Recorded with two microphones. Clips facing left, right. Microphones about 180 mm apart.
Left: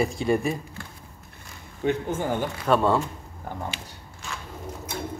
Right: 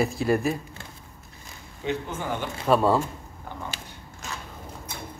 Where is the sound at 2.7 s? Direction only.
5° right (ahead or behind).